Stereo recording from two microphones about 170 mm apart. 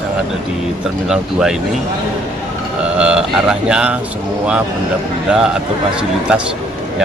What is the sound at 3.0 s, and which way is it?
Speech, 5° right (ahead or behind).